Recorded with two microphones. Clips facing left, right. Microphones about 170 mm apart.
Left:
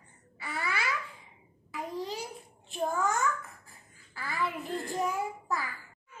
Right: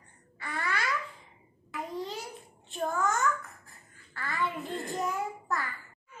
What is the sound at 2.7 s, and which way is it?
Babbling, centre (ahead or behind).